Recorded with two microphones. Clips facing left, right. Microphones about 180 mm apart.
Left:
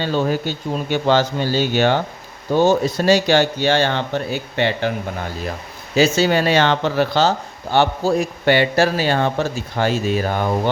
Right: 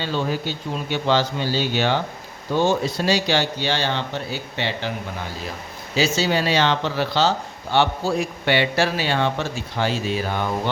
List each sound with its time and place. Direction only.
0.0 s speech: 50° left (ahead or behind)
6.0 s speech: 55° left (ahead or behind)